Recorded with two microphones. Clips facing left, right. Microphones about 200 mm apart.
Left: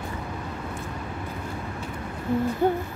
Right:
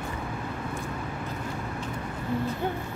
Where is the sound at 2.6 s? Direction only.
45° left (ahead or behind).